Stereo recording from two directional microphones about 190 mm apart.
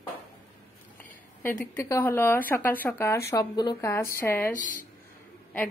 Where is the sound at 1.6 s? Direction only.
15° left (ahead or behind).